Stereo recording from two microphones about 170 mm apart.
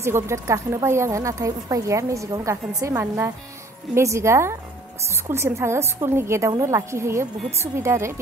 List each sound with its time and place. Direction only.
0.0 s a woman's voice: 15° right (ahead or behind)